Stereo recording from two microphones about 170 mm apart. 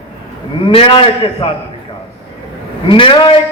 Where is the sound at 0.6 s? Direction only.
30° left (ahead or behind).